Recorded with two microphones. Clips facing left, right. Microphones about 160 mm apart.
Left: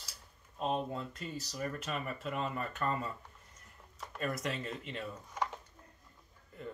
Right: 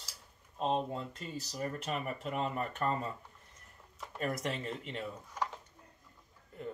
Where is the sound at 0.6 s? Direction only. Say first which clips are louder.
Right 2 dB; 30° right (ahead or behind).